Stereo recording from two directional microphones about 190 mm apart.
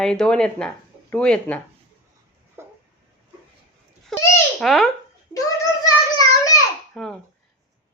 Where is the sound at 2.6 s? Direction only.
15° right (ahead or behind).